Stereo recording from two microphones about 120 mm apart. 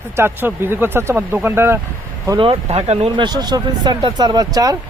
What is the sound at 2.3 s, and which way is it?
Speech, 55° right (ahead or behind).